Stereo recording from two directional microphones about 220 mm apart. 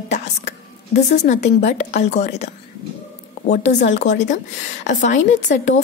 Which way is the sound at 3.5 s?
30° left (ahead or behind).